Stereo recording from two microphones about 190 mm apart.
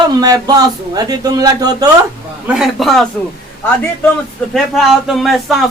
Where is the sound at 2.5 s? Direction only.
Centre (ahead or behind).